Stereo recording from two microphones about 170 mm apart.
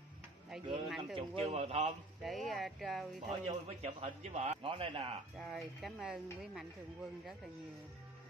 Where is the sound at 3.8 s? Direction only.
40° right (ahead or behind).